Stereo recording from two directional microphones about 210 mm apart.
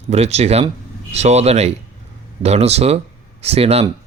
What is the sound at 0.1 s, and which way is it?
Speech, 30° right (ahead or behind).